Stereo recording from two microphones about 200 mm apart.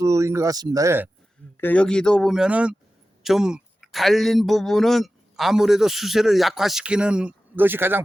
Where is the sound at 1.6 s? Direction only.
5° left (ahead or behind).